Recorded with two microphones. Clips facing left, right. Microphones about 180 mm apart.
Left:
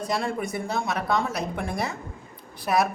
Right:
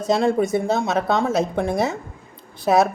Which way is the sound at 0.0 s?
25° right (ahead or behind).